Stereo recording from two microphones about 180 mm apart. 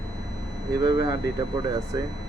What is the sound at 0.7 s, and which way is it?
Speech, 25° right (ahead or behind).